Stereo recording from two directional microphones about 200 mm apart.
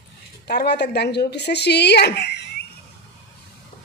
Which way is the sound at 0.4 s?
55° left (ahead or behind).